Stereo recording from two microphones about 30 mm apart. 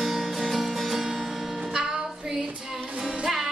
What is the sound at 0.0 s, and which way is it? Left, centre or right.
Music, centre.